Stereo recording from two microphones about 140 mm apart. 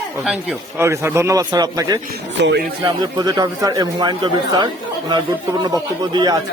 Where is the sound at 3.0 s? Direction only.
30° right (ahead or behind).